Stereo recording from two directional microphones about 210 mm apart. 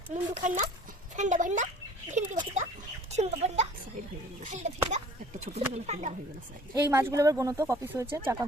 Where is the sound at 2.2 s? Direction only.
35° right (ahead or behind).